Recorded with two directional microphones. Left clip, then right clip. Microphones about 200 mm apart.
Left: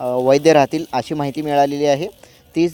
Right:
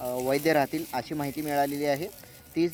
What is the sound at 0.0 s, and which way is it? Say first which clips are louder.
Speech: left 13 dB; 35° left (ahead or behind).